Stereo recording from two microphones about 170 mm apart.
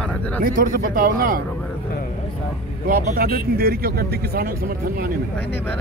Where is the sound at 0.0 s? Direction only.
10° left (ahead or behind).